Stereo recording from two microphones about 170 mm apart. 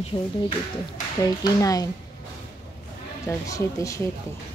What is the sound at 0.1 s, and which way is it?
Speech, 20° left (ahead or behind).